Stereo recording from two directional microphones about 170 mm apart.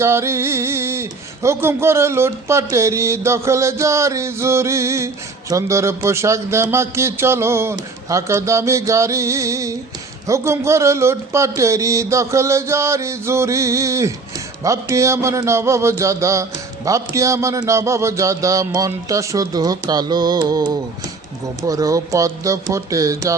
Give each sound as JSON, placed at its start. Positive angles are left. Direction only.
{"t": 0.0, "sound": "speech", "side_deg": -15}